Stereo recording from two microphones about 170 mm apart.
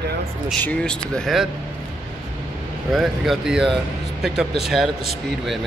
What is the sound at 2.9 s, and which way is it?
Speech, centre (ahead or behind).